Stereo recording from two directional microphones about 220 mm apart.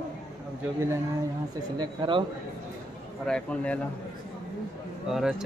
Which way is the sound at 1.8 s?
20° right (ahead or behind).